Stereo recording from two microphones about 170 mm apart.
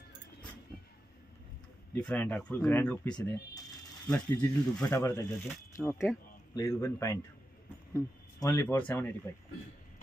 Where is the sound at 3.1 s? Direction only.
20° left (ahead or behind).